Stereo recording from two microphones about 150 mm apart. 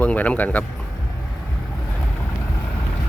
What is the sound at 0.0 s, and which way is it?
Speech, 10° left (ahead or behind).